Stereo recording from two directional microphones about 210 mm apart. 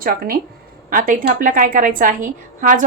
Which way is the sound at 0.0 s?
45° right (ahead or behind).